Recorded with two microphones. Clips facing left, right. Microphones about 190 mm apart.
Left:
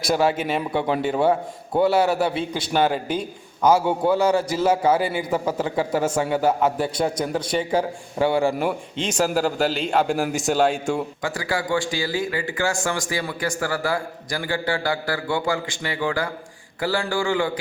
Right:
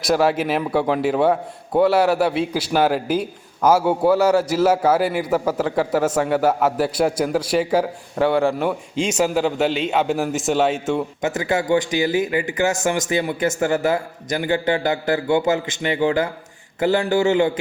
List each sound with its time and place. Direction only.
0.0 s a man's voice: centre (ahead or behind)
11.2 s a man's voice: 20° right (ahead or behind)